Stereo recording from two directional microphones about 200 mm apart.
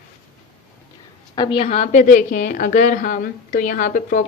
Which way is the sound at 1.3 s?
25° left (ahead or behind).